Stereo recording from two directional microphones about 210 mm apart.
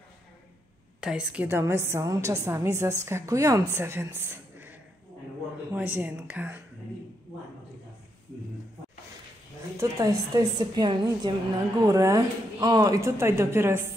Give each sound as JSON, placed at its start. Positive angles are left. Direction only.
{"t": 1.0, "sound": "a woman's voice", "side_deg": -5}
{"t": 9.8, "sound": "a woman's voice", "side_deg": -15}